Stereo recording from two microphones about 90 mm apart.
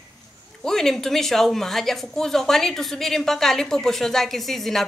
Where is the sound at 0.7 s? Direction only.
5° left (ahead or behind).